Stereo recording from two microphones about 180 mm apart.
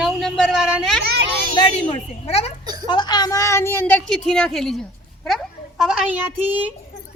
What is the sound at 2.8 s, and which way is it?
A woman's voice, 25° left (ahead or behind).